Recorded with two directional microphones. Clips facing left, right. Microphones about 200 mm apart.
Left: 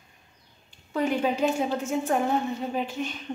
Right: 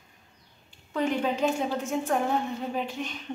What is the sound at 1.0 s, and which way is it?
A woman's voice, 5° left (ahead or behind).